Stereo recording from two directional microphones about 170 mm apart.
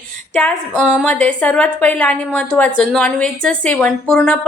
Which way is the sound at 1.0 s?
5° left (ahead or behind).